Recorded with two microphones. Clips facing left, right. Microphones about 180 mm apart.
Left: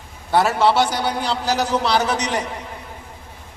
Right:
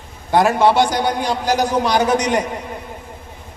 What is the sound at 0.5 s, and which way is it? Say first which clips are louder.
A man's voice: right 3 dB; 15° right (ahead or behind).